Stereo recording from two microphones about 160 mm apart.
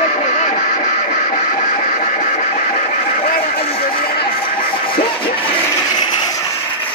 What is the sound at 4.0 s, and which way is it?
Music, 75° left (ahead or behind).